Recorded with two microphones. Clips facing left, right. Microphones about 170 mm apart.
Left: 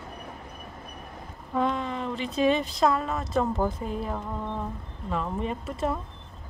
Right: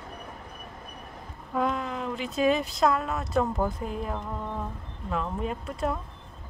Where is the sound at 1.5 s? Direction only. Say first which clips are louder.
Left 1 dB; 5° right (ahead or behind).